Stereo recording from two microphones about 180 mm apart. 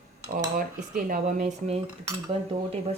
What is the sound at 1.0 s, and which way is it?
Speech, 45° right (ahead or behind).